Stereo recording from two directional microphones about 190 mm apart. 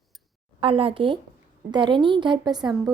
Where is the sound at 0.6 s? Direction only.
30° right (ahead or behind).